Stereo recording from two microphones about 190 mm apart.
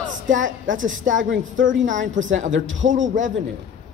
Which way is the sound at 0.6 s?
90° right.